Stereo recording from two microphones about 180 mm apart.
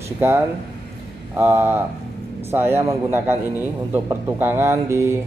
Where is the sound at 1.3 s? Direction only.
10° right (ahead or behind).